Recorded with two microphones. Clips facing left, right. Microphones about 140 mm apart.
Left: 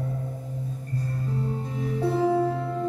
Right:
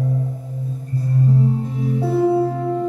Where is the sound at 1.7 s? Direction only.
10° right (ahead or behind).